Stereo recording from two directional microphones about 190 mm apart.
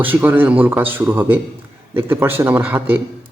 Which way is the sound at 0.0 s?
10° right (ahead or behind).